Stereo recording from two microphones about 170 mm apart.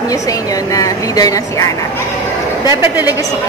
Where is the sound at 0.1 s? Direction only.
20° left (ahead or behind).